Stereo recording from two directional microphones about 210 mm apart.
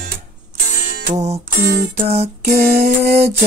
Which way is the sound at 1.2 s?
30° right (ahead or behind).